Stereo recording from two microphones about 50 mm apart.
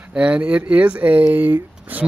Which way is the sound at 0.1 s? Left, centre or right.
Right.